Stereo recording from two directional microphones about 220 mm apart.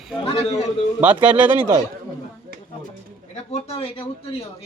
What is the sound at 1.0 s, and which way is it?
Speech, 5° right (ahead or behind).